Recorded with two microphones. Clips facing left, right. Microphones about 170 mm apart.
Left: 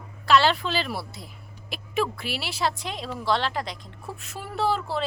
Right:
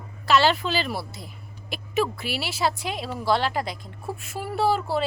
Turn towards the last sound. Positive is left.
turn(degrees=-5)  # may be behind; listen again after turning